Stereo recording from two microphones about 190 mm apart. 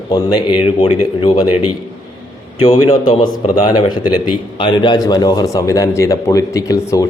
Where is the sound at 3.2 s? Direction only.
20° left (ahead or behind).